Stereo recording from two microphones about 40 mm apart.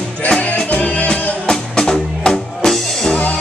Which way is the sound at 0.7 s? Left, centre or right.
Left.